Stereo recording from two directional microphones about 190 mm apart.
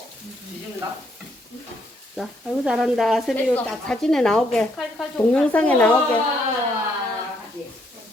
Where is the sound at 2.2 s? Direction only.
Centre (ahead or behind).